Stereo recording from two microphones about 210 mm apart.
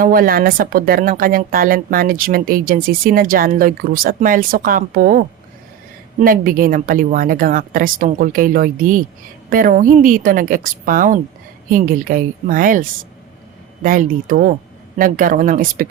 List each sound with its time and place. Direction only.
0.0 s a woman's voice: 45° right (ahead or behind)